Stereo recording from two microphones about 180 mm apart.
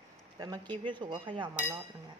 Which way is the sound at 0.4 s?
25° right (ahead or behind).